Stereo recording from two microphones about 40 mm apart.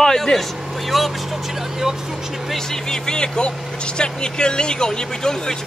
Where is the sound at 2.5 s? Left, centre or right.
Centre.